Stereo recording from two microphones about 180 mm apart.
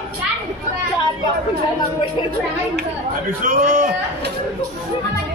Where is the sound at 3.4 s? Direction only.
45° right (ahead or behind).